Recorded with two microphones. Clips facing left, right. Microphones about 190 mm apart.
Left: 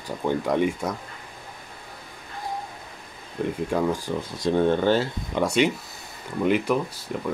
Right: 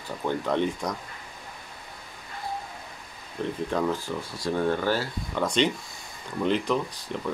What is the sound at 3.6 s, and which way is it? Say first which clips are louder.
Speech: left 2 dB; 10° left (ahead or behind).